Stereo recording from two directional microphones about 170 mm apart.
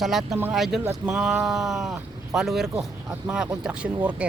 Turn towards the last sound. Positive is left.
turn(degrees=-5)  # may be behind; listen again after turning